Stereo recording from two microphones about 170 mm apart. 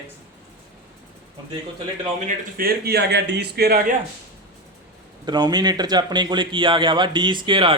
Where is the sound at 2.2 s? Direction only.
60° right (ahead or behind).